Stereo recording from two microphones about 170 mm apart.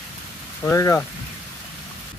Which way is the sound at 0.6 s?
20° left (ahead or behind).